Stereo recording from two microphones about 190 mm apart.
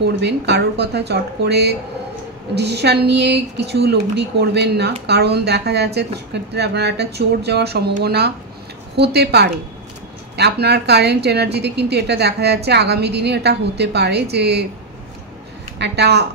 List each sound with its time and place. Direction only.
0.0 s a woman's voice: 65° right (ahead or behind)
15.8 s a woman's voice: 60° right (ahead or behind)